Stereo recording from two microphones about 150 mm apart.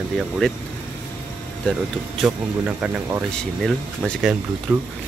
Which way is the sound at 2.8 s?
10° right (ahead or behind).